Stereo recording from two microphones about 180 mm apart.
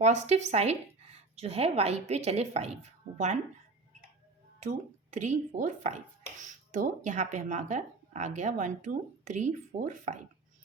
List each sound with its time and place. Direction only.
0.0 s speech: 40° right (ahead or behind)
5.1 s speech: 40° right (ahead or behind)